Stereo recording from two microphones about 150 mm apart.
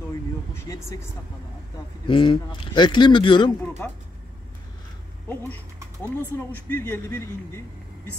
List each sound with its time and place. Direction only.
2.0 s a man's voice: 35° left (ahead or behind)
3.8 s speech: 15° left (ahead or behind)
6.0 s speech: 15° left (ahead or behind)